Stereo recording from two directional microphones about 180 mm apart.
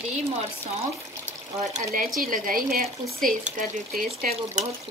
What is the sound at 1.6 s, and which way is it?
Speech, 40° right (ahead or behind).